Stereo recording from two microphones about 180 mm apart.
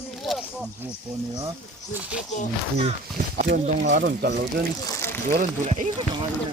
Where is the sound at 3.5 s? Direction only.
45° right (ahead or behind).